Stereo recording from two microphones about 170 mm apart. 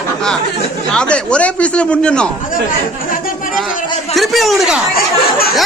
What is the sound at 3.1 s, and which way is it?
Chatter, 55° left (ahead or behind).